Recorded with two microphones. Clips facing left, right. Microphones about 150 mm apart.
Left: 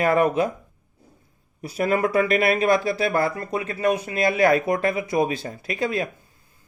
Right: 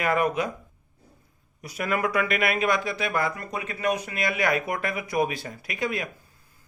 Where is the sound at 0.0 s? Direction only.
30° left (ahead or behind).